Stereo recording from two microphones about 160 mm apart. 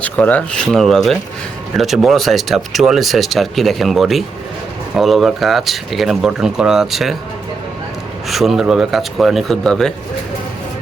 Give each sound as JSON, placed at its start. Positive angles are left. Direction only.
{"t": 0.0, "sound": "speech", "side_deg": 10}
{"t": 8.3, "sound": "speech", "side_deg": 0}